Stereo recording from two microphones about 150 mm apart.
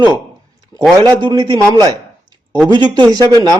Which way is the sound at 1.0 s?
25° right (ahead or behind).